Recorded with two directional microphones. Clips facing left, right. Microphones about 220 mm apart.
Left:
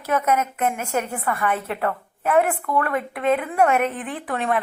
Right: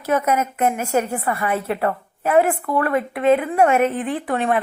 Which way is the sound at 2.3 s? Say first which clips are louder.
Right 3 dB; 30° right (ahead or behind).